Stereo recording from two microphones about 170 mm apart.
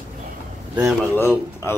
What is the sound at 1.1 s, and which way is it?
Speech, 15° left (ahead or behind).